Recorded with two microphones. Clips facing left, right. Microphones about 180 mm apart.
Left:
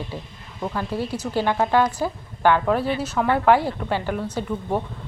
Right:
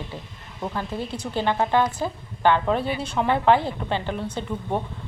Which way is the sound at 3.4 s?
10° left (ahead or behind).